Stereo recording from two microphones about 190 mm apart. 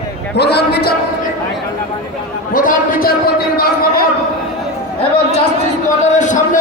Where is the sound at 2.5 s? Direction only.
50° left (ahead or behind).